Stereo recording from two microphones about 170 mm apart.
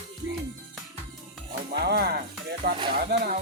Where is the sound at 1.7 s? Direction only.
70° right (ahead or behind).